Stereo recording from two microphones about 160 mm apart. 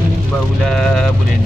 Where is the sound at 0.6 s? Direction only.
5° left (ahead or behind).